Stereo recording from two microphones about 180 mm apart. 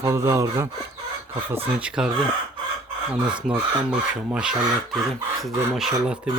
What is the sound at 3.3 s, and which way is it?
Speech, 5° right (ahead or behind).